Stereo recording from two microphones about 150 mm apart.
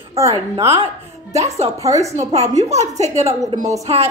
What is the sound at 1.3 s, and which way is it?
Speech, 45° right (ahead or behind).